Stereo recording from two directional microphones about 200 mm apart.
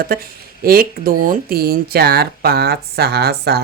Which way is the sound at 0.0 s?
50° right (ahead or behind).